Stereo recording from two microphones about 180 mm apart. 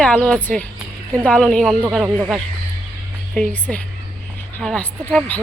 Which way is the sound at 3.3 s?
5° left (ahead or behind).